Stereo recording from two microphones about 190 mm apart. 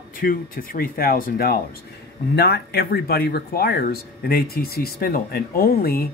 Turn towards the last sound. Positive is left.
turn(degrees=50)  # may be behind; listen again after turning